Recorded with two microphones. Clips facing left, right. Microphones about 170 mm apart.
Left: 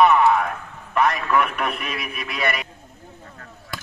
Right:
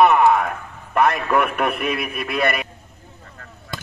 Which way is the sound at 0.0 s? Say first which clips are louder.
Right 2 dB; 50° right (ahead or behind).